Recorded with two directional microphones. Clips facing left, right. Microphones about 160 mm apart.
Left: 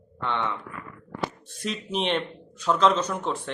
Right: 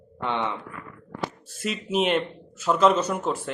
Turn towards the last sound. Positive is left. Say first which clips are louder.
# right 2 dB
turn(degrees=-5)  # may be behind; listen again after turning